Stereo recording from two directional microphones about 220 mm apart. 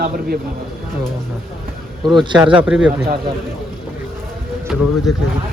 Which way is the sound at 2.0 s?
20° right (ahead or behind).